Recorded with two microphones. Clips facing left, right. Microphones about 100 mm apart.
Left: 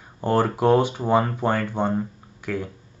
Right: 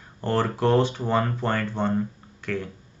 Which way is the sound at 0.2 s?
15° left (ahead or behind).